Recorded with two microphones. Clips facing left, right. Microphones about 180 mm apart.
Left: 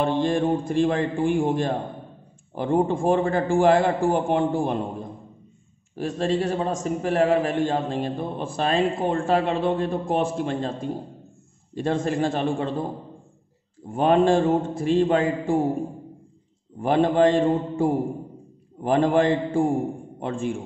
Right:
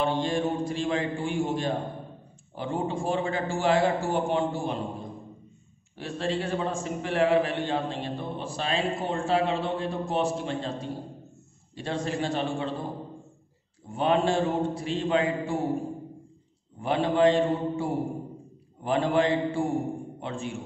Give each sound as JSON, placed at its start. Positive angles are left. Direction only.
{"t": 0.0, "sound": "a man's voice", "side_deg": 50}
{"t": 13.8, "sound": "a man's voice", "side_deg": 50}
{"t": 16.8, "sound": "a man's voice", "side_deg": 50}